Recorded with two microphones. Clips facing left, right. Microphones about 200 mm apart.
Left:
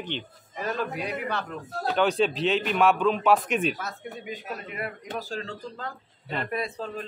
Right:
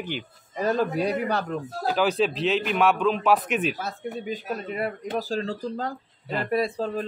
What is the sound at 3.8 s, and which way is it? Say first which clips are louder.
Speech: right 5 dB; 30° right (ahead or behind).